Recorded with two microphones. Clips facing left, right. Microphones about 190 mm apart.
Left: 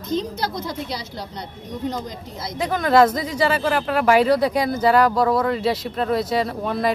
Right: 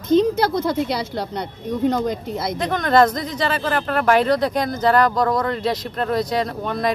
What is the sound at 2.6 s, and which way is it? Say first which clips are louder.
Speech: left 1 dB; 5° left (ahead or behind).